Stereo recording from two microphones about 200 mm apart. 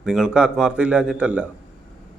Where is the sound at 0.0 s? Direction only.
5° right (ahead or behind).